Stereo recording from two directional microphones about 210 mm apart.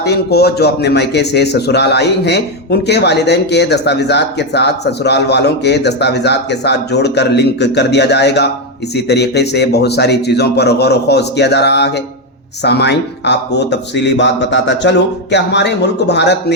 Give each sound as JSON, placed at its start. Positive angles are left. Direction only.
{"t": 0.0, "sound": "a man's voice", "side_deg": 50}